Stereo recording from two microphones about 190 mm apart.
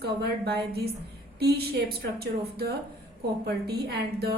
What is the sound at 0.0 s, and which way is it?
Speech, 55° right (ahead or behind).